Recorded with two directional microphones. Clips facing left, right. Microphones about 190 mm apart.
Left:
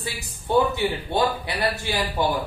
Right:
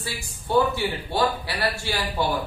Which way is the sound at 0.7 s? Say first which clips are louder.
Left 2 dB; 20° left (ahead or behind).